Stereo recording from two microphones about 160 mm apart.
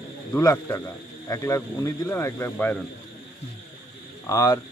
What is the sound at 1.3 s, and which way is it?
Speech, 20° left (ahead or behind).